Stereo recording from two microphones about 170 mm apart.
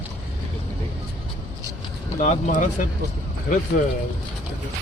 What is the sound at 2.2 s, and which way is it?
Speech, 45° left (ahead or behind).